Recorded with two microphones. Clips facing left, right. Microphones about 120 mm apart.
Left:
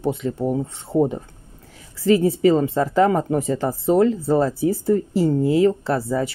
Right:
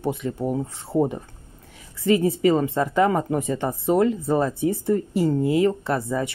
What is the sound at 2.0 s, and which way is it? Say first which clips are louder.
Speech: left 3 dB; 30° left (ahead or behind).